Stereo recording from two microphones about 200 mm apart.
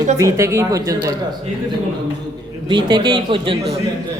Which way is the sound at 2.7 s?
20° right (ahead or behind).